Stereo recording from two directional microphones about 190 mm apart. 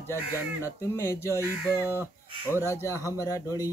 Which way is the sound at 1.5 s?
10° right (ahead or behind).